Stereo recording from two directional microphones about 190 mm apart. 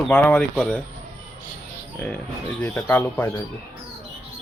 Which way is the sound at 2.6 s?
5° left (ahead or behind).